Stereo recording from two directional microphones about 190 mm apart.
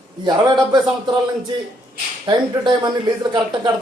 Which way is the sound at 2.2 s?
25° right (ahead or behind).